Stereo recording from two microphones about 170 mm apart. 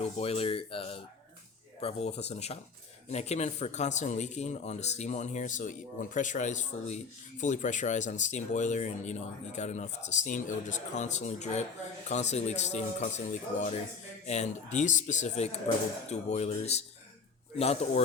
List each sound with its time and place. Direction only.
0.0 s speech: 35° left (ahead or behind)